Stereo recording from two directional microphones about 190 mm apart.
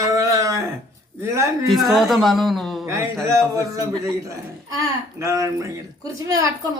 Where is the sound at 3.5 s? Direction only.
15° right (ahead or behind).